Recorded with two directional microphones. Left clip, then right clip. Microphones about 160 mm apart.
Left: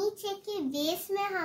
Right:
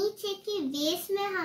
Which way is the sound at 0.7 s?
35° left (ahead or behind).